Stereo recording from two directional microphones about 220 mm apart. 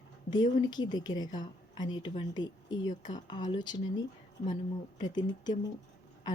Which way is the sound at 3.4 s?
35° left (ahead or behind).